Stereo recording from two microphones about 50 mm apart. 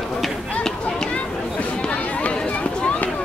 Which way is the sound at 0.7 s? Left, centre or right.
Centre.